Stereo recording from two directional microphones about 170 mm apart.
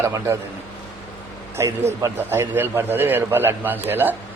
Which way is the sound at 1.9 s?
15° right (ahead or behind).